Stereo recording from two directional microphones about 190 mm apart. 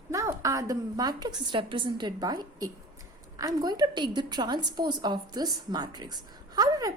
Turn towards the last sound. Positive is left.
turn(degrees=-20)  # may be behind; listen again after turning